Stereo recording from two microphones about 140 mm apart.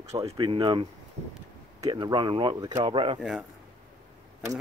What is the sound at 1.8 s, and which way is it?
Speech, 30° right (ahead or behind).